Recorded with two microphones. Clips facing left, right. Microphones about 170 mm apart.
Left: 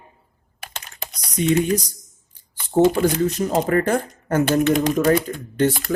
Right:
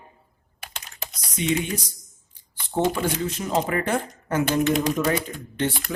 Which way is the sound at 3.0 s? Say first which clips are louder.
Left 7 dB; 40° left (ahead or behind).